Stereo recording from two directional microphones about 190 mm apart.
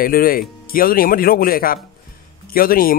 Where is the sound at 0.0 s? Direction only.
50° left (ahead or behind).